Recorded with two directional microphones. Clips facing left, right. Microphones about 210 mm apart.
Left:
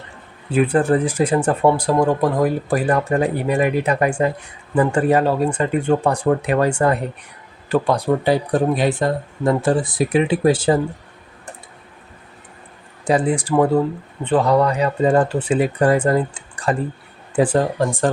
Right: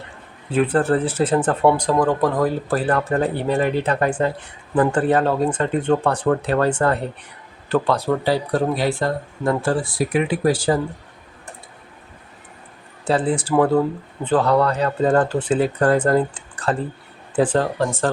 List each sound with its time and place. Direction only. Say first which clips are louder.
0.5 s speech: left 2 dB; 10° left (ahead or behind)
13.1 s speech: left 2 dB; 10° left (ahead or behind)